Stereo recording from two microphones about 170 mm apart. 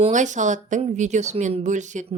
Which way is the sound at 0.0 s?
45° right (ahead or behind).